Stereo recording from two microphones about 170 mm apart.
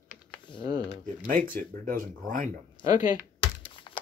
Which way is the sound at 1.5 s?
55° right (ahead or behind).